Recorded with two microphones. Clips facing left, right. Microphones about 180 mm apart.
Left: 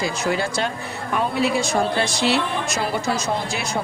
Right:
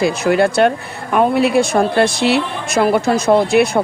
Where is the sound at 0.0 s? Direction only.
60° right (ahead or behind).